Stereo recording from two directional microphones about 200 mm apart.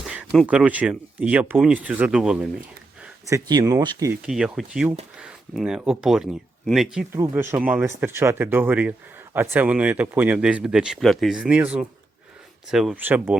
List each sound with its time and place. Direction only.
0.0 s speech: 5° right (ahead or behind)
3.0 s speech: 15° right (ahead or behind)
4.3 s speech: centre (ahead or behind)
7.1 s speech: 10° right (ahead or behind)